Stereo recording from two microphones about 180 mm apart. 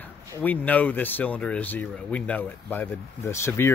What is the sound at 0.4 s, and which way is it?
Speech, 10° left (ahead or behind).